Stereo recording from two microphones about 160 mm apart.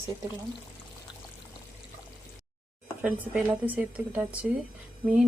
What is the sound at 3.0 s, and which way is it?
Speech, 10° right (ahead or behind).